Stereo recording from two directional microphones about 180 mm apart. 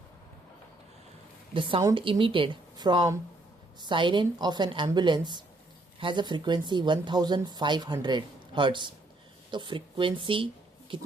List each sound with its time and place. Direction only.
1.5 s speech: 30° right (ahead or behind)